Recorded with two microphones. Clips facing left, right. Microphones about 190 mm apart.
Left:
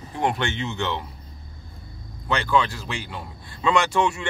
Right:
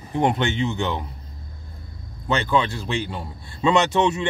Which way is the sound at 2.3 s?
20° right (ahead or behind).